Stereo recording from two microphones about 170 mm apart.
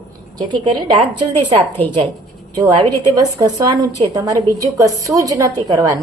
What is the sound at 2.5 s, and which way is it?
A woman's voice, 25° right (ahead or behind).